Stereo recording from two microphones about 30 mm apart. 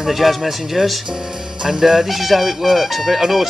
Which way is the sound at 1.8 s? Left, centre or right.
Centre.